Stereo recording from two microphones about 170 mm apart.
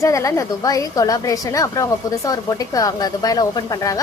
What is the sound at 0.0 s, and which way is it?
A woman's voice, 20° left (ahead or behind).